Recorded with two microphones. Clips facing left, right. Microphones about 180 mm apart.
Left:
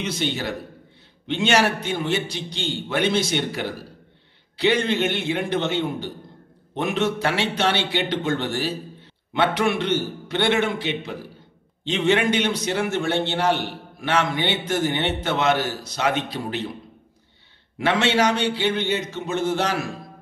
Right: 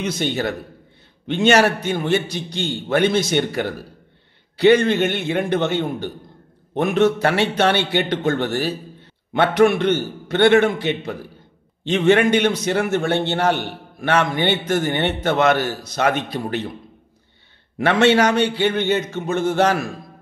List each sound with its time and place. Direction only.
0.0 s a man's voice: 50° right (ahead or behind)
17.7 s a man's voice: 55° right (ahead or behind)